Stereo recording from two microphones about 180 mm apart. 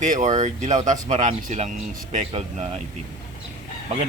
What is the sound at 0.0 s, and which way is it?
A man's voice, 45° right (ahead or behind).